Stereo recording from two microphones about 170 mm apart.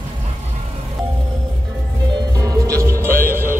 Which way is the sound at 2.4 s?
20° right (ahead or behind).